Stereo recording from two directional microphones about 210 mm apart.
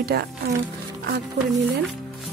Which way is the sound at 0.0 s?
50° right (ahead or behind).